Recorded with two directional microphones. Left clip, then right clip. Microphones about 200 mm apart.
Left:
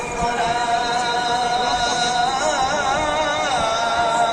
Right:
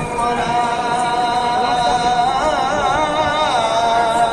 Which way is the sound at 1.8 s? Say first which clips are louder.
Right 4 dB; centre (ahead or behind).